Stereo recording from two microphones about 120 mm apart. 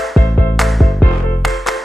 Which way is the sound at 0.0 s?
Centre (ahead or behind).